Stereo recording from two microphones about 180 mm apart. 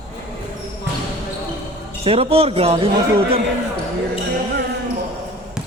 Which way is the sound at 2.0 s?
30° right (ahead or behind).